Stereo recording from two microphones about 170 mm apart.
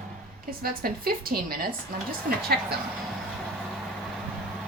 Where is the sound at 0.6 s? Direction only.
60° right (ahead or behind).